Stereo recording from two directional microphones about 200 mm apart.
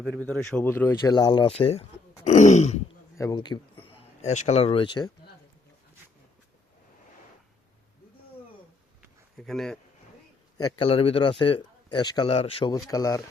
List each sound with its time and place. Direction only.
0.0 s speech: 5° left (ahead or behind); by 1.9 s 30° left (ahead or behind)
2.2 s throat clearing: 35° left (ahead or behind)
3.2 s speech: 20° left (ahead or behind)
3.8 s speech: 35° left (ahead or behind)
9.4 s speech: centre (ahead or behind)
10.6 s speech: 20° left (ahead or behind)